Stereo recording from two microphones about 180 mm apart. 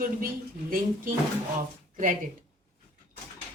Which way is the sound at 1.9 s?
50° right (ahead or behind).